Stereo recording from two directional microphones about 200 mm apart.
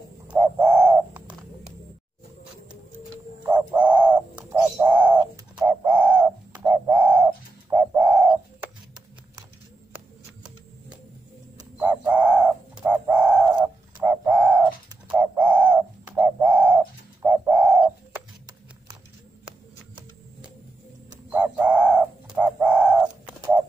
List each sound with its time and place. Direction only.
0.3 s bird: 10° right (ahead or behind)
3.4 s bird: 5° right (ahead or behind)
11.8 s bird: 10° right (ahead or behind)
21.3 s bird: 10° right (ahead or behind)